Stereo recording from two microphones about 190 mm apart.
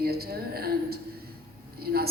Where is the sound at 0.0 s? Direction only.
55° right (ahead or behind).